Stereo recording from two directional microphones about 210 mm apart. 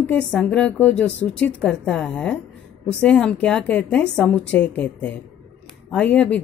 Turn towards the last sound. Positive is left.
turn(degrees=5)  # may be behind; listen again after turning